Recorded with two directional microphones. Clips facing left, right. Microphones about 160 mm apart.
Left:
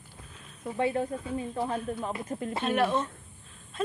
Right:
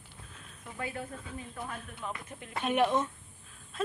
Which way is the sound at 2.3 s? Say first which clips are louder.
Left 13 dB; 40° left (ahead or behind).